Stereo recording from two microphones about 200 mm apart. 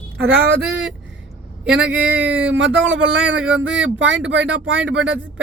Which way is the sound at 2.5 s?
65° right (ahead or behind).